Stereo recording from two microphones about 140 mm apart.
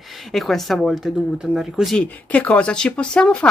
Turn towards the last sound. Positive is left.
turn(degrees=10)  # may be behind; listen again after turning